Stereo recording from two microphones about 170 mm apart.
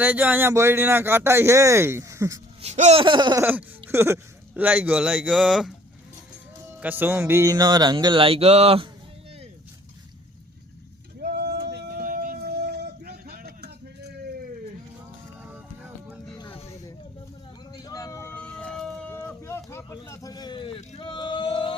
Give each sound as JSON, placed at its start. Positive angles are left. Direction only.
{"t": 0.0, "sound": "speech", "side_deg": -10}
{"t": 2.6, "sound": "speech", "side_deg": -40}
{"t": 3.0, "sound": "music", "side_deg": -25}
{"t": 3.4, "sound": "speech", "side_deg": -15}
{"t": 6.7, "sound": "music", "side_deg": -10}
{"t": 11.2, "sound": "a sound", "side_deg": -70}
{"t": 15.4, "sound": "music", "side_deg": -10}
{"t": 16.5, "sound": "snake", "side_deg": 40}
{"t": 17.7, "sound": "a sound", "side_deg": 20}
{"t": 19.1, "sound": "a sound", "side_deg": 15}